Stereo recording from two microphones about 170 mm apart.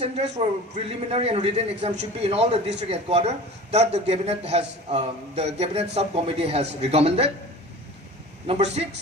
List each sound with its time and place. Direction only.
0.0 s a man's voice: 40° right (ahead or behind)
8.4 s a man's voice: 35° right (ahead or behind)